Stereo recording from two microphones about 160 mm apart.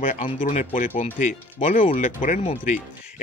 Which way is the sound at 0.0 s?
55° left (ahead or behind).